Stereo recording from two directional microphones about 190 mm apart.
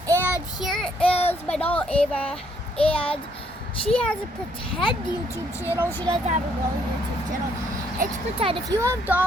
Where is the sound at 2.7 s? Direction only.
30° left (ahead or behind).